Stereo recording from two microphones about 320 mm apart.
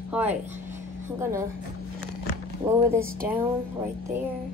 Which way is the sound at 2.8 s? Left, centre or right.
Centre.